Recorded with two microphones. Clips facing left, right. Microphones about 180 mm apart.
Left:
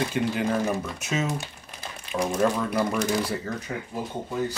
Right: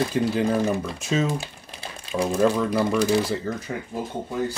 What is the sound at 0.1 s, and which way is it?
Speech, 35° right (ahead or behind).